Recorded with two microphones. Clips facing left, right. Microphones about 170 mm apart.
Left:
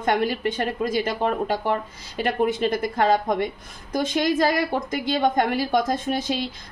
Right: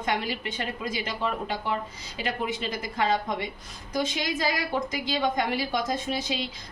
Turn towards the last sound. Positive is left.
turn(degrees=50)  # may be behind; listen again after turning